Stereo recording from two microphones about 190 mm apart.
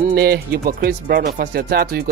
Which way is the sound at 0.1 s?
55° right (ahead or behind).